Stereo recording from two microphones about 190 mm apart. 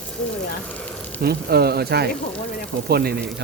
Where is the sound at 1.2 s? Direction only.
55° right (ahead or behind).